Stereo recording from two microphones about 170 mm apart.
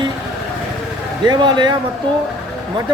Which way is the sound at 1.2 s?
25° right (ahead or behind).